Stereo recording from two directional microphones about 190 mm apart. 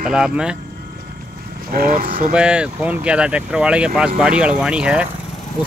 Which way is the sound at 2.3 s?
5° right (ahead or behind).